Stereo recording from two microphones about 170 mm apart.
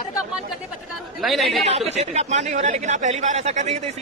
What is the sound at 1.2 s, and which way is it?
Speech, centre (ahead or behind).